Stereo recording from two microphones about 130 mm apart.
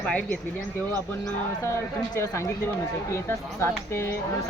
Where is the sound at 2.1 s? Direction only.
20° left (ahead or behind).